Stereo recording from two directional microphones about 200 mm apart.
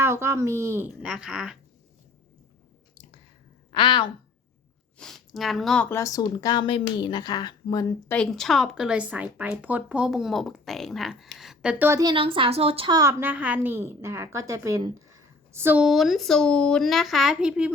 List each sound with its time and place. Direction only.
0.0 s speech: 15° right (ahead or behind)
3.7 s a woman's voice: 25° left (ahead or behind)
4.9 s speech: centre (ahead or behind); by 8.1 s 20° left (ahead or behind)
8.1 s speech: 5° left (ahead or behind)